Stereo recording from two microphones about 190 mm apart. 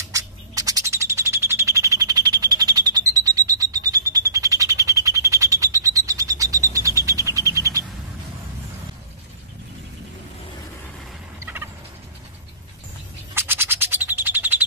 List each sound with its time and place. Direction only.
0.1 s bird: 20° right (ahead or behind)
11.3 s fowl: 10° right (ahead or behind)
13.3 s bird: 10° right (ahead or behind)